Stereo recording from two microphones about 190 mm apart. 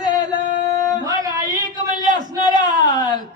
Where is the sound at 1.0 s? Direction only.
20° right (ahead or behind).